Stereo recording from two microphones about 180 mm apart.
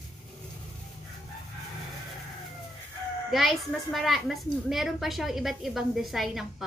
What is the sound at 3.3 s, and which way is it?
A woman's voice, centre (ahead or behind).